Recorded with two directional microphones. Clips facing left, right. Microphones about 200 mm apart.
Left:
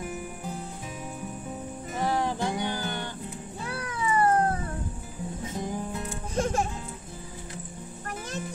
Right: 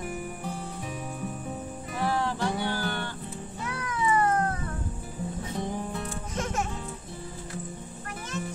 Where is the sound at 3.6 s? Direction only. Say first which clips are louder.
Right 2 dB; 35° left (ahead or behind).